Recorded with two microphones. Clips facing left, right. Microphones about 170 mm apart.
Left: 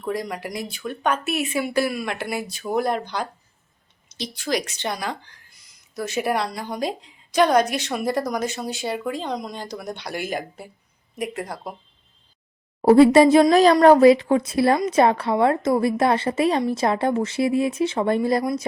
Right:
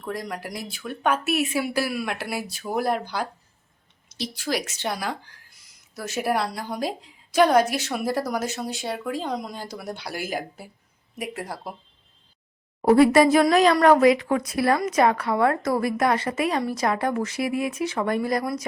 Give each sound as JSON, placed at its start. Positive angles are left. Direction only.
{"t": 0.0, "sound": "a woman's voice", "side_deg": 0}
{"t": 12.8, "sound": "a woman's voice", "side_deg": 30}